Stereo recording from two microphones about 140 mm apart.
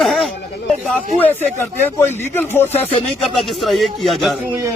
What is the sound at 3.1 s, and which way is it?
Speech, centre (ahead or behind).